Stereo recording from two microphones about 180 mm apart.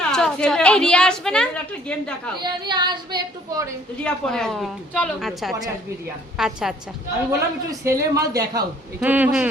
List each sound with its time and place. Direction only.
0.1 s a woman's voice: 5° left (ahead or behind)
2.4 s a woman's voice: 25° right (ahead or behind)
4.0 s a woman's voice: 5° left (ahead or behind)
7.3 s a woman's voice: 15° right (ahead or behind)
9.0 s speech: 10° right (ahead or behind)